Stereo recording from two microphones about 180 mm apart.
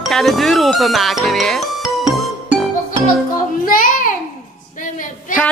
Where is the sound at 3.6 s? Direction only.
50° left (ahead or behind).